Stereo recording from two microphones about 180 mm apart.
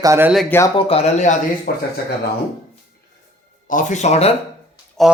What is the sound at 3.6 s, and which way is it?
Speech, 45° left (ahead or behind).